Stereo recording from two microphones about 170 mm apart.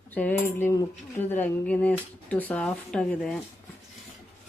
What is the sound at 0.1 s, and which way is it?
Speech, 10° left (ahead or behind).